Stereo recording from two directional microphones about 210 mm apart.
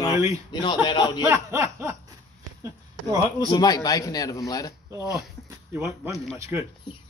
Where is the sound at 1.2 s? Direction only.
15° right (ahead or behind).